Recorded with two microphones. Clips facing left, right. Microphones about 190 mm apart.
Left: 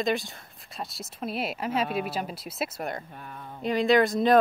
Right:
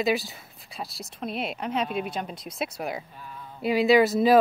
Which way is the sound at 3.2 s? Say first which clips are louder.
Left 1 dB; 55° left (ahead or behind).